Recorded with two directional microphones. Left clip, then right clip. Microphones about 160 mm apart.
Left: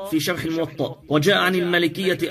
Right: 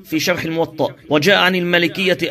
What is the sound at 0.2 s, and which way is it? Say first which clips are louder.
A man's voice: right 6 dB; 15° right (ahead or behind).